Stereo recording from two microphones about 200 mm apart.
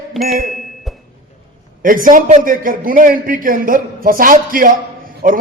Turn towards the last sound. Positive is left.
turn(degrees=-45)  # may be behind; listen again after turning